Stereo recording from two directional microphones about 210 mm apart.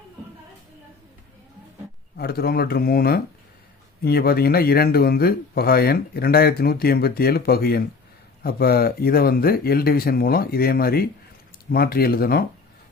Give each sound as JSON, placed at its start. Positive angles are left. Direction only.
{"t": 2.1, "sound": "speech", "side_deg": 50}